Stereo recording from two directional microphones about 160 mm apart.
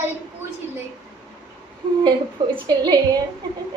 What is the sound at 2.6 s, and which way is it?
Child singing, 25° right (ahead or behind).